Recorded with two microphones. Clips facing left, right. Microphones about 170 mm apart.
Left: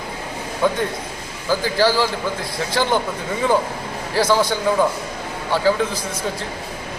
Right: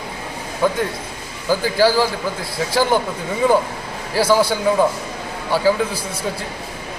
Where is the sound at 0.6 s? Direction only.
5° right (ahead or behind).